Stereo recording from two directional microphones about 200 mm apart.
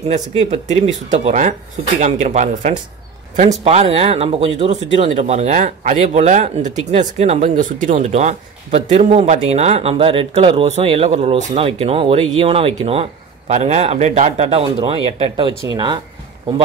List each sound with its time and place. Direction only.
0.1 s speech: 35° right (ahead or behind)